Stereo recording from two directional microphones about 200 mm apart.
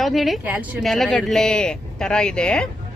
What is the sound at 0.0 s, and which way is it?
Speech, centre (ahead or behind).